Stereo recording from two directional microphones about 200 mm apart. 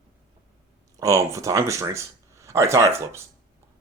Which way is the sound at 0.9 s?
15° right (ahead or behind).